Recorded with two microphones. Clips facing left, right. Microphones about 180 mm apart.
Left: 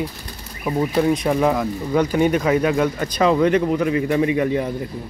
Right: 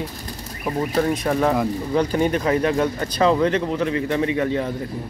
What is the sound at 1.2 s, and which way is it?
A man's voice, 15° left (ahead or behind).